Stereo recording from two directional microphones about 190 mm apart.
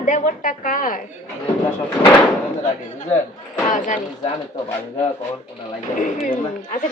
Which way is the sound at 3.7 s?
40° left (ahead or behind).